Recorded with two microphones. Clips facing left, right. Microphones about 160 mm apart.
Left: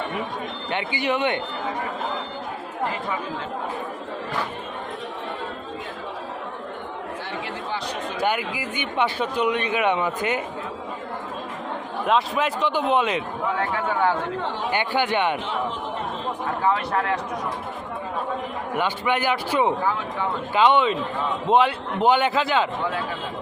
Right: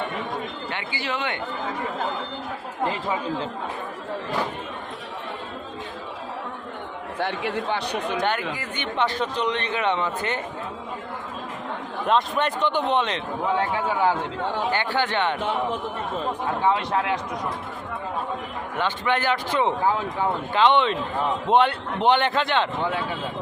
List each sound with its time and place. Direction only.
0.7 s speech: 20° left (ahead or behind)
7.2 s speech: 65° right (ahead or behind)
8.2 s speech: 10° left (ahead or behind)
12.0 s a man's voice: centre (ahead or behind)
13.6 s speech: 20° right (ahead or behind)
14.7 s speech: 15° left (ahead or behind)
18.8 s a man's voice: 10° left (ahead or behind)